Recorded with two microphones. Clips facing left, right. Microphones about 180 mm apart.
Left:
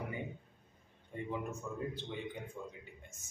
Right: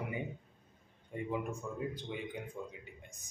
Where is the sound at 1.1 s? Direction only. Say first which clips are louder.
Right 2 dB; 15° right (ahead or behind).